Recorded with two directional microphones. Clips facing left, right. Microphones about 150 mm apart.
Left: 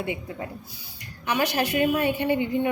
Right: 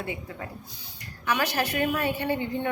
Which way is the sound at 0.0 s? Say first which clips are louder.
Left 4 dB; 20° left (ahead or behind).